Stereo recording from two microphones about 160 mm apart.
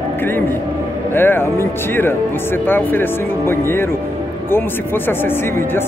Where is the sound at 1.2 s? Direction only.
15° left (ahead or behind).